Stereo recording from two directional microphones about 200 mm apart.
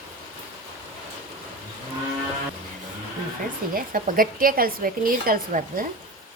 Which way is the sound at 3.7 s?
45° right (ahead or behind).